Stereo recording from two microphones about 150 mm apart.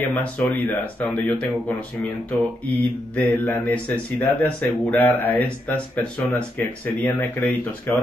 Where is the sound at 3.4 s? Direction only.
10° left (ahead or behind).